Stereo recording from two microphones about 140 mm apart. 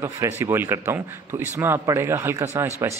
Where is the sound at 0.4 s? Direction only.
15° right (ahead or behind).